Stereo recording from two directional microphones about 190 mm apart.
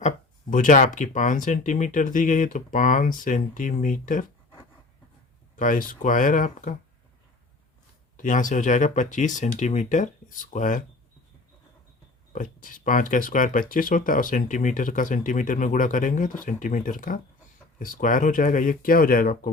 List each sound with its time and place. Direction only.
0.5 s speech: 40° left (ahead or behind)
5.5 s speech: 45° left (ahead or behind)
8.1 s speech: 40° left (ahead or behind)
12.3 s speech: 45° left (ahead or behind)